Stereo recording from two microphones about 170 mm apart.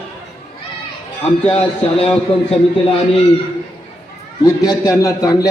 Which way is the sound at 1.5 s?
35° left (ahead or behind).